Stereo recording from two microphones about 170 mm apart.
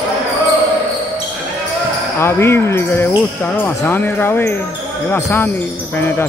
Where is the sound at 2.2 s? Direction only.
15° left (ahead or behind).